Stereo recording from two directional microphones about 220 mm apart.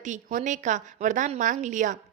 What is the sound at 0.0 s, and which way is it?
A woman's voice, 35° right (ahead or behind).